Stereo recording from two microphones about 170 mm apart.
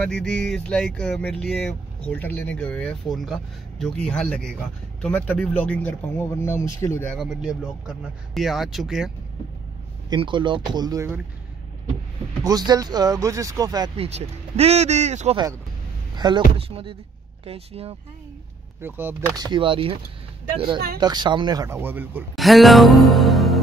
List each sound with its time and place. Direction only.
0.0 s speech: 5° left (ahead or behind)
7.2 s speech: 5° right (ahead or behind)
10.0 s speech: 25° right (ahead or behind)
12.4 s speech: 25° right (ahead or behind)
13.9 s speech: 35° right (ahead or behind)
16.2 s speech: 25° right (ahead or behind)
18.8 s speech: 10° right (ahead or behind)
19.3 s speech: 25° right (ahead or behind)
21.7 s speech: 10° right (ahead or behind)
22.3 s speech: centre (ahead or behind)